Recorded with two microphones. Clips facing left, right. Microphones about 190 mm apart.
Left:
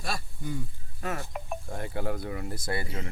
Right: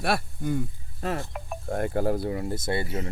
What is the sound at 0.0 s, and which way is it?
Speech, 60° right (ahead or behind).